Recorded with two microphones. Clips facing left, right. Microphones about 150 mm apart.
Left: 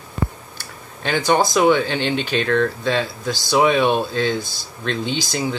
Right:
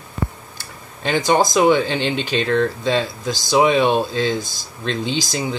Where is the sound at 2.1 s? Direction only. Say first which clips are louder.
Even; 55° left (ahead or behind).